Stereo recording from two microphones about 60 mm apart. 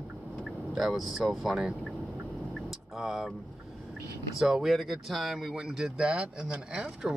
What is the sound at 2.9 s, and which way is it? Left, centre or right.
Speech, centre.